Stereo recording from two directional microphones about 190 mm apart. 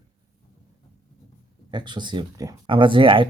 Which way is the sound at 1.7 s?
25° right (ahead or behind).